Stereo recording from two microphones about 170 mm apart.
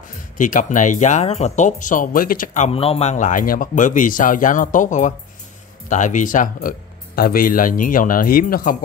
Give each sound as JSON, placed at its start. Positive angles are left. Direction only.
{"t": 0.1, "sound": "speech", "side_deg": 50}